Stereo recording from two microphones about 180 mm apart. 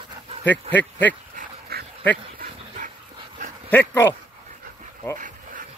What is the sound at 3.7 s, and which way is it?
Speech, 10° left (ahead or behind).